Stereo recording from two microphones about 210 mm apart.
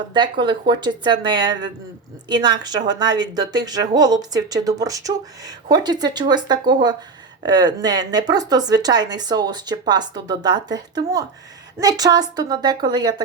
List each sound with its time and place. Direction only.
0.1 s a woman's voice: 20° right (ahead or behind)